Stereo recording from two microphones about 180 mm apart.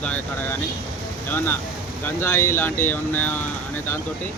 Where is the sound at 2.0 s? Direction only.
15° left (ahead or behind).